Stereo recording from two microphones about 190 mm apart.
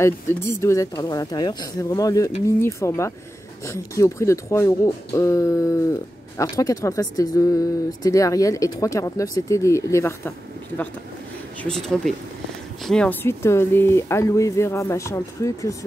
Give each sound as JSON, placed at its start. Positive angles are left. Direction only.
{"t": 0.0, "sound": "speech", "side_deg": 15}
{"t": 11.6, "sound": "speech", "side_deg": 5}